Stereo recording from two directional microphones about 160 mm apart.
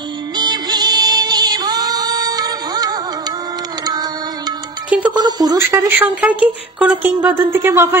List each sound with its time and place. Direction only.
0.4 s music: 25° right (ahead or behind)
5.1 s a woman's voice: 25° right (ahead or behind)